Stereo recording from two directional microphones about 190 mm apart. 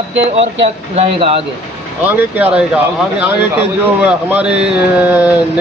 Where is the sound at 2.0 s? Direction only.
10° right (ahead or behind).